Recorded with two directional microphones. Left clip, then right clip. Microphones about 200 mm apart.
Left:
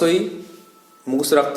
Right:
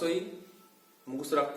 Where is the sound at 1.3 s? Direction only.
45° left (ahead or behind).